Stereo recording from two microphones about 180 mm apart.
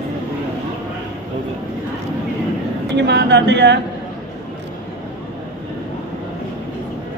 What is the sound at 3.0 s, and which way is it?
Speech, 75° right (ahead or behind).